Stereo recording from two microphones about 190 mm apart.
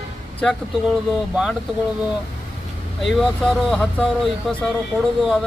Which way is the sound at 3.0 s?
Centre (ahead or behind).